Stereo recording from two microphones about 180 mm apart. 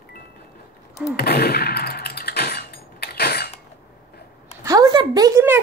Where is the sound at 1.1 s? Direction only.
60° left (ahead or behind).